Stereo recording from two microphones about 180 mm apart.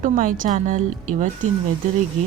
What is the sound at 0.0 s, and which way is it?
Speech, 50° right (ahead or behind).